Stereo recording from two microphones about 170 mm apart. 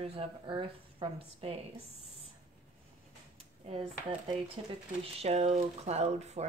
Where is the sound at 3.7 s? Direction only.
35° right (ahead or behind).